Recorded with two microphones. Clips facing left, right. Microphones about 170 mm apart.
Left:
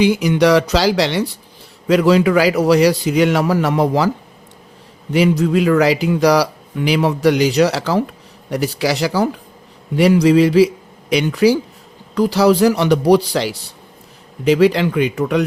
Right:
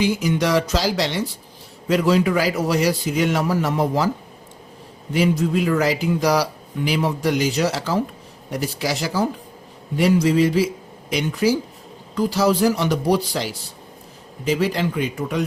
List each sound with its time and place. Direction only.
0.0 s speech: 70° left (ahead or behind)
5.1 s speech: 70° left (ahead or behind)